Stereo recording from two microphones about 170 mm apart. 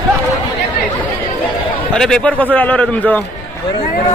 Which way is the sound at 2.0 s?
5° left (ahead or behind).